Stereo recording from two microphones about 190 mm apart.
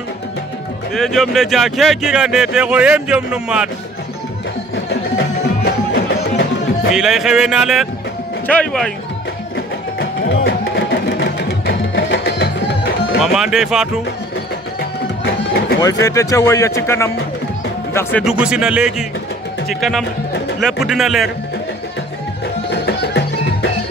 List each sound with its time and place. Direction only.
0.9 s speech: centre (ahead or behind)
5.1 s music: 55° left (ahead or behind)
6.9 s speech: centre (ahead or behind)
9.9 s music: 55° left (ahead or behind)
13.2 s speech: centre (ahead or behind)
14.8 s music: 60° left (ahead or behind)
15.8 s speech: 20° left (ahead or behind)
18.2 s speech: 5° right (ahead or behind)
22.7 s music: 65° left (ahead or behind)